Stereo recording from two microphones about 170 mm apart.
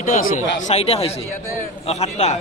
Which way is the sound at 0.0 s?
55° left (ahead or behind).